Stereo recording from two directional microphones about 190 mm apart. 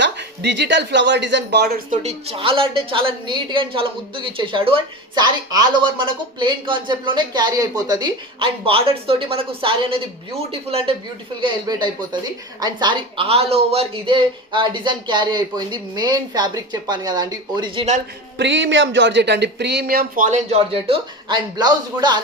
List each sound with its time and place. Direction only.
0.0 s speech: 65° right (ahead or behind)
1.9 s speech: 35° right (ahead or behind)
18.3 s speech: 70° right (ahead or behind); by 22.2 s 20° right (ahead or behind)